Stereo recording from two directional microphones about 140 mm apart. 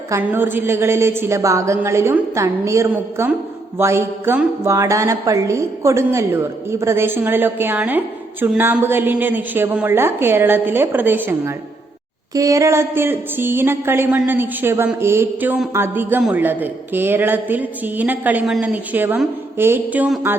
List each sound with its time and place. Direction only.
0.1 s a woman's voice: 15° right (ahead or behind)